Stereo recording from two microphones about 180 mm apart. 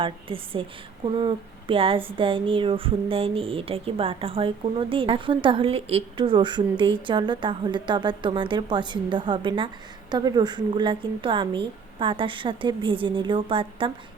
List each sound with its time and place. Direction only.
0.0 s speech: 30° right (ahead or behind)